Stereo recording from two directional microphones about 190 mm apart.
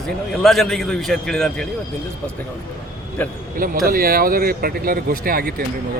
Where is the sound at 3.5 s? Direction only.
50° right (ahead or behind).